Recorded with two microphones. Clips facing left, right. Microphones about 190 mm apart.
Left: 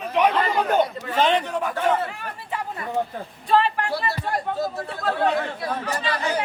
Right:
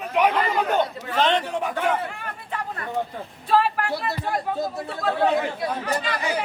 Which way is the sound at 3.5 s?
5° right (ahead or behind).